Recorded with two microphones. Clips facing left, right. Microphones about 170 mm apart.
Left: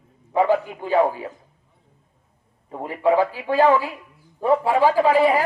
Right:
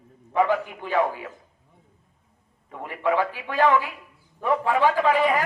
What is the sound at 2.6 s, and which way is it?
A man's voice, 30° left (ahead or behind).